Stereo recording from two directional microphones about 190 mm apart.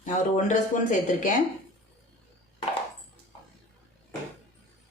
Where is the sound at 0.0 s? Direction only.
40° left (ahead or behind).